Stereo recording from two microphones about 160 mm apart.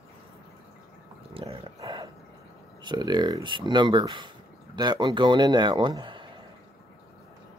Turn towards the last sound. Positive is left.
turn(degrees=-30)  # may be behind; listen again after turning